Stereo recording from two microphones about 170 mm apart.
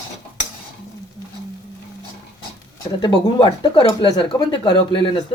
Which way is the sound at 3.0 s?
30° left (ahead or behind).